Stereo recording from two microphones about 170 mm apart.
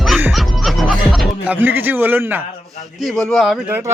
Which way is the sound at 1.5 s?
10° right (ahead or behind).